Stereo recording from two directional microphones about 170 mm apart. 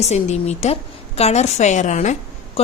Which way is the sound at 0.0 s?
40° left (ahead or behind).